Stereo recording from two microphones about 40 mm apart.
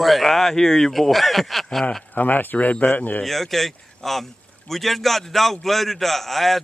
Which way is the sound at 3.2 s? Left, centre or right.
Centre.